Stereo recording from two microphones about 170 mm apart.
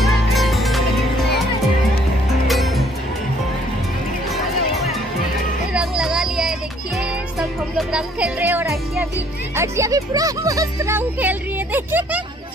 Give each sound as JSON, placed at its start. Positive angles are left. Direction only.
{"t": 0.0, "sound": "music", "side_deg": 0}
{"t": 2.4, "sound": "music", "side_deg": 0}
{"t": 5.7, "sound": "music", "side_deg": -5}
{"t": 9.6, "sound": "speech", "side_deg": -20}